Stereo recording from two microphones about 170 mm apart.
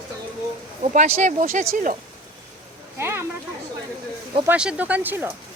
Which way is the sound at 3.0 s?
15° right (ahead or behind).